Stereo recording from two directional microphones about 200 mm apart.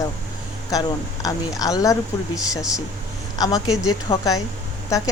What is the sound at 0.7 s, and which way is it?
Speech, 15° left (ahead or behind).